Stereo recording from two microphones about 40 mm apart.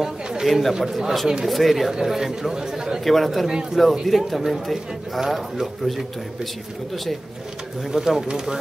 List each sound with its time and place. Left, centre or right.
0.0 s chatter: centre
0.5 s a man's voice: centre
3.0 s a man's voice: centre
7.9 s speech: centre